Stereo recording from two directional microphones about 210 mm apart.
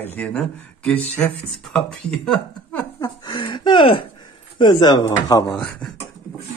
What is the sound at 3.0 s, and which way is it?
Speech, 20° left (ahead or behind).